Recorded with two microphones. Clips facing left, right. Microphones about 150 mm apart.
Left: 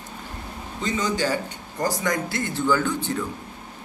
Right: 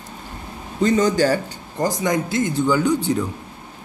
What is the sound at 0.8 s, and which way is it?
Speech, 45° right (ahead or behind).